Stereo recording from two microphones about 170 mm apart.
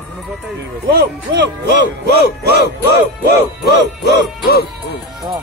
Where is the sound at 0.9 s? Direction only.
75° right (ahead or behind).